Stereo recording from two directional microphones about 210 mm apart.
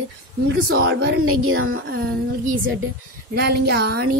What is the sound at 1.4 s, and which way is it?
Speech, 70° right (ahead or behind).